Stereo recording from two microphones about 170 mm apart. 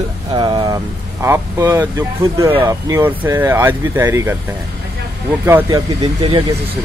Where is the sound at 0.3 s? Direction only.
25° right (ahead or behind).